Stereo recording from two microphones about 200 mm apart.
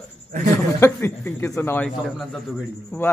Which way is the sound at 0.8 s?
10° left (ahead or behind).